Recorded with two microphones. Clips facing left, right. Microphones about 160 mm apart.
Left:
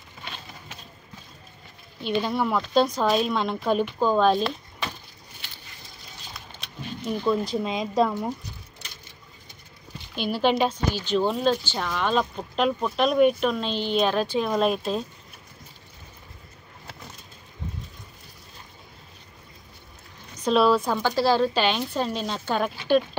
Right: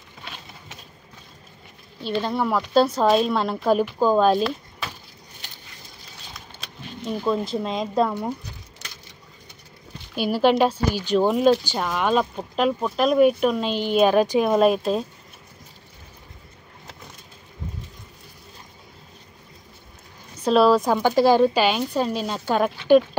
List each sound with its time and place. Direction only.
2.3 s speech: 5° right (ahead or behind)
3.0 s speech: 35° right (ahead or behind)
3.3 s speech: 5° right (ahead or behind)
7.2 s speech: centre (ahead or behind)
10.1 s speech: 5° right (ahead or behind)
14.6 s speech: centre (ahead or behind)
20.3 s speech: 5° right (ahead or behind)
20.8 s speech: 15° right (ahead or behind)